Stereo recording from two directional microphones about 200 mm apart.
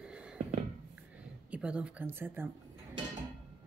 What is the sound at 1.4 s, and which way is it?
Speech, 5° right (ahead or behind).